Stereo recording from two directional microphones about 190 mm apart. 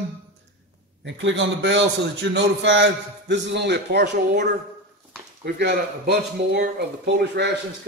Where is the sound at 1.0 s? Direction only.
75° right (ahead or behind).